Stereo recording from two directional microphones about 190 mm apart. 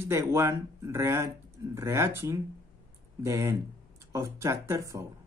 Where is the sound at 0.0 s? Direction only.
15° right (ahead or behind).